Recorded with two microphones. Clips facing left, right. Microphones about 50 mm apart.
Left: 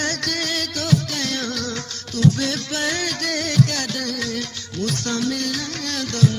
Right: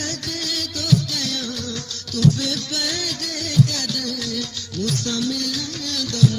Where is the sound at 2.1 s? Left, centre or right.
Left.